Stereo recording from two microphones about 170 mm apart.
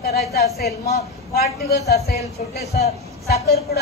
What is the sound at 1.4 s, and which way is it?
Speech, 70° left (ahead or behind).